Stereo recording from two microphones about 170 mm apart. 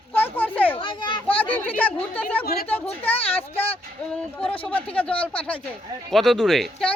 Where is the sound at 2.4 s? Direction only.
65° left (ahead or behind).